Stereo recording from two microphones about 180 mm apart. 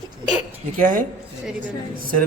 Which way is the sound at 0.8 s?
45° right (ahead or behind).